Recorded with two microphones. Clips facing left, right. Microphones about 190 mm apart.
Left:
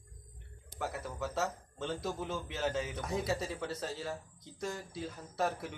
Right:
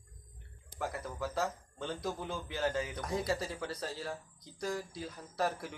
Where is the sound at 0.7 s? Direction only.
Centre (ahead or behind).